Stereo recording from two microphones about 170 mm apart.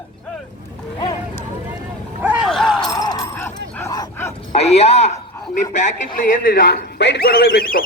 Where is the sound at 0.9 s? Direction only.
20° left (ahead or behind).